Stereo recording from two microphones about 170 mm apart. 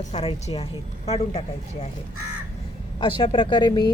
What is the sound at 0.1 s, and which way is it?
A woman's voice, 40° left (ahead or behind).